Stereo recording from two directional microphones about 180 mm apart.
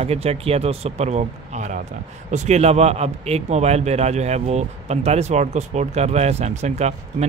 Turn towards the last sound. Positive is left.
turn(degrees=-40)  # may be behind; listen again after turning